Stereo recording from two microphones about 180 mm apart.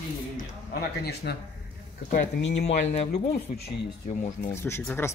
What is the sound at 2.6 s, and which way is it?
Speech, 40° left (ahead or behind).